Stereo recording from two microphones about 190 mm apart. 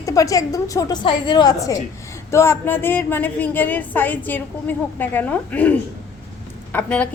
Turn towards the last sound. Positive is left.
turn(degrees=5)  # may be behind; listen again after turning